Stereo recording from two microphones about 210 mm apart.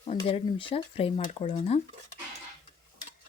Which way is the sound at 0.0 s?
30° left (ahead or behind).